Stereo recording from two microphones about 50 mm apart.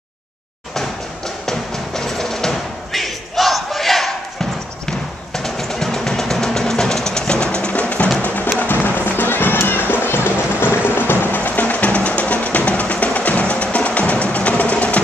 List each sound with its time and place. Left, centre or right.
0.7 s music: centre; by 8.1 s left
8.5 s music: left